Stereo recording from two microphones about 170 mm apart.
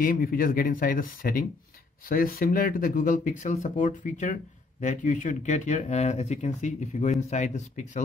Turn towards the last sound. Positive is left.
turn(degrees=45)  # may be behind; listen again after turning